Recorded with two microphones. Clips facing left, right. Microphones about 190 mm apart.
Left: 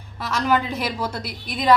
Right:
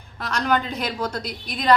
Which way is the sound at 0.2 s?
5° left (ahead or behind).